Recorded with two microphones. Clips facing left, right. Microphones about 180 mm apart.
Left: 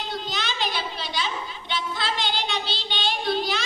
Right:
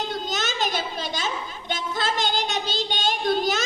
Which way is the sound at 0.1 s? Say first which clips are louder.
Right 2 dB; 45° right (ahead or behind).